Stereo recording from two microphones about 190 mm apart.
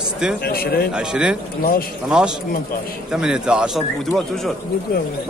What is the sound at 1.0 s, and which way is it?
A man's voice, 5° right (ahead or behind).